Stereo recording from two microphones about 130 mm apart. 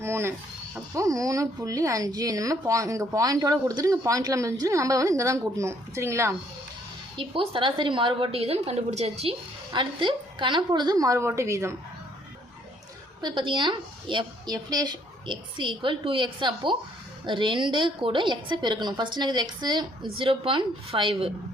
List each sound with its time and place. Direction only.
0.0 s speech: 20° right (ahead or behind)
7.2 s a woman's voice: 40° right (ahead or behind)
9.7 s a woman's voice: 40° right (ahead or behind); by 11.7 s 20° right (ahead or behind)
13.2 s a woman's voice: 40° right (ahead or behind)